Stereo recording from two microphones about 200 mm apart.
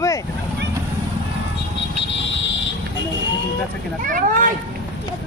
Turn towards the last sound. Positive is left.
turn(degrees=-40)  # may be behind; listen again after turning